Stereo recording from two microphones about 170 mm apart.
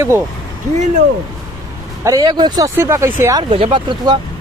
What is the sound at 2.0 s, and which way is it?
Speech, 20° right (ahead or behind).